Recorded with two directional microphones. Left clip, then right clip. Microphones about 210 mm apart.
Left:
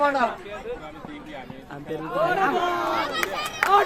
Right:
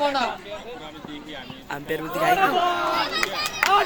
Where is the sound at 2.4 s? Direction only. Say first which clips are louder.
Right 2 dB; 50° left (ahead or behind).